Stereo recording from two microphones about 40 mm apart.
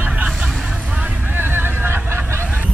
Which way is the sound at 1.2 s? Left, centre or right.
Right.